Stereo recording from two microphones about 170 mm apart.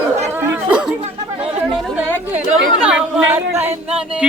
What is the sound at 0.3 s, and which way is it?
Chatter, 10° right (ahead or behind).